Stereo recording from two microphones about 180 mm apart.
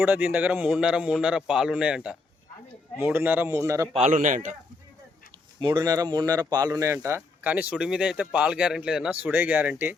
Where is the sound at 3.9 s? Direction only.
40° right (ahead or behind).